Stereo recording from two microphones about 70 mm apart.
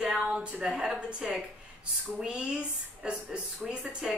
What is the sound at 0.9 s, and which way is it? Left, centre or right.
Speech, centre.